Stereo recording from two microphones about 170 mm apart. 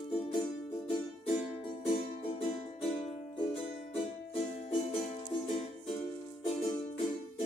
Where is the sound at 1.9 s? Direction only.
30° left (ahead or behind).